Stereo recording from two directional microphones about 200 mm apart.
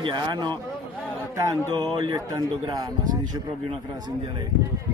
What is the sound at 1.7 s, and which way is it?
A man's voice, 20° right (ahead or behind).